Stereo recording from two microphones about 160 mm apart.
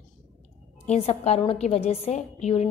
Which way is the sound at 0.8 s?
45° left (ahead or behind).